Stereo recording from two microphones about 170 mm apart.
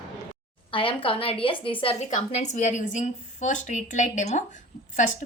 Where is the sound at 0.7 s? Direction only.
30° left (ahead or behind).